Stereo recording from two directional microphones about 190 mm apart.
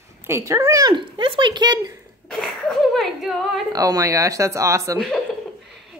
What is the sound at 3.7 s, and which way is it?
Speech, 20° right (ahead or behind).